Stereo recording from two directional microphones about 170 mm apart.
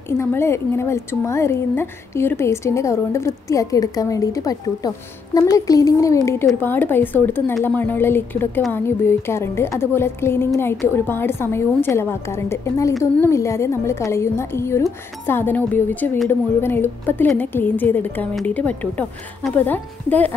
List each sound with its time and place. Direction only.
0.2 s a woman's voice: 15° left (ahead or behind)